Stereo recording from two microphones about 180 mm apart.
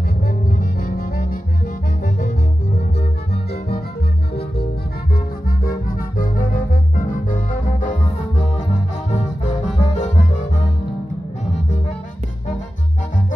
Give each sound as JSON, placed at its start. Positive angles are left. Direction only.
{"t": 0.6, "sound": "music", "side_deg": 50}
{"t": 5.1, "sound": "music", "side_deg": 55}